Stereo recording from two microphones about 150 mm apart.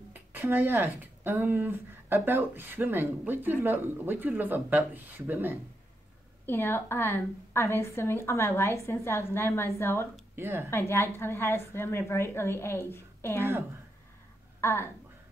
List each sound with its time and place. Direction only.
0.1 s speech: 15° right (ahead or behind)
6.4 s a woman's voice: 15° left (ahead or behind)
10.3 s speech: 15° right (ahead or behind)
10.7 s a woman's voice: 15° left (ahead or behind)
13.4 s speech: 15° right (ahead or behind)
14.6 s speech: 15° left (ahead or behind)